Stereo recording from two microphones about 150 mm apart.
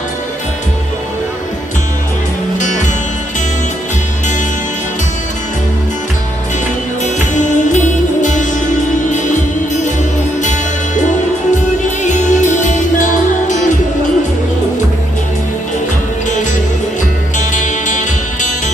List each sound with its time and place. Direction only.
7.0 s music: 55° left (ahead or behind)
12.0 s music: 55° left (ahead or behind)
17.3 s music: 55° left (ahead or behind)